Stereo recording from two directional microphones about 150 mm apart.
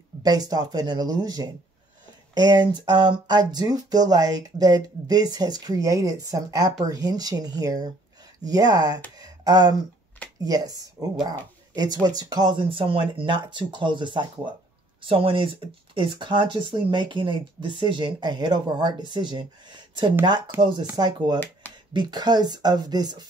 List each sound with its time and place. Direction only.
0.2 s speech: 25° right (ahead or behind)
9.2 s a sound: 25° right (ahead or behind)
10.4 s speech: 25° right (ahead or behind)
20.5 s speech: 15° right (ahead or behind)
20.9 s speech: 25° right (ahead or behind)